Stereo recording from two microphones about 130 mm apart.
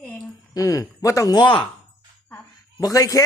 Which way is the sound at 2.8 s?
25° left (ahead or behind).